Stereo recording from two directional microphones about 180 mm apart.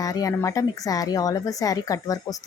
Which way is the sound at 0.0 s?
20° left (ahead or behind).